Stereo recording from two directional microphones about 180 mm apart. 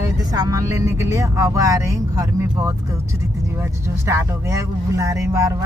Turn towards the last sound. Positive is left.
turn(degrees=-20)  # may be behind; listen again after turning